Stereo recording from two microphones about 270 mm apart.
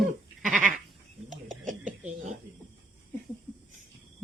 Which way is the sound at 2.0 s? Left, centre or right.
Right.